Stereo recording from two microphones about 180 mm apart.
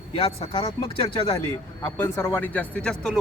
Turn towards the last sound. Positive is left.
turn(degrees=5)  # may be behind; listen again after turning